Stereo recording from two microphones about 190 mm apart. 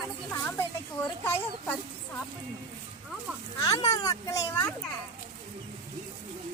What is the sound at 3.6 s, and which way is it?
A child's voice, 20° left (ahead or behind).